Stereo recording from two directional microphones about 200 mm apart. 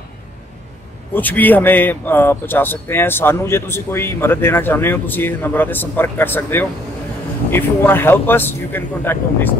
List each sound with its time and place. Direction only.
1.1 s speech: 10° left (ahead or behind)